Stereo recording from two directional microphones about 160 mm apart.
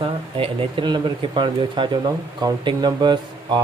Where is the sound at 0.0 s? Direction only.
35° right (ahead or behind).